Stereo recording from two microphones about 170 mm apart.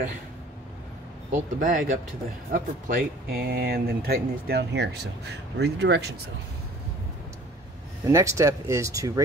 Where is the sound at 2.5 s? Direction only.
55° right (ahead or behind); by 6.1 s 85° right.